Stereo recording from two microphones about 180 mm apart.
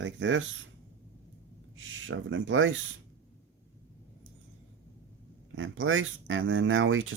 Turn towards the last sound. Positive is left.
turn(degrees=-90)